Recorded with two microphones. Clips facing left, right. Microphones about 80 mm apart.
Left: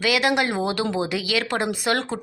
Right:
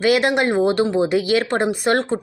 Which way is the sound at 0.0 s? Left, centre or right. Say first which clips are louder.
Right 4 dB; right.